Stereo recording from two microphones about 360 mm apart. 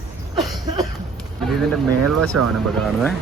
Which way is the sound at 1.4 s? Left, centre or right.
Centre.